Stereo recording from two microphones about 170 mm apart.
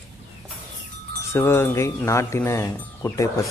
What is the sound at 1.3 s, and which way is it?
Speech, 15° left (ahead or behind).